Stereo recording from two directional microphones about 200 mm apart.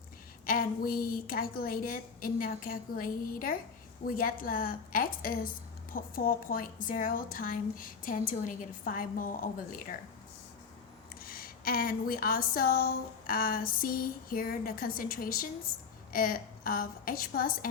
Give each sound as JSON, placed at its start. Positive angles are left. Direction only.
{"t": 0.4, "sound": "speech", "side_deg": 45}
{"t": 11.2, "sound": "speech", "side_deg": 45}